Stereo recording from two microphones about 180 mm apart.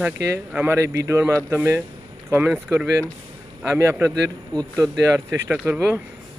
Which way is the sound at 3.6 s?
15° right (ahead or behind).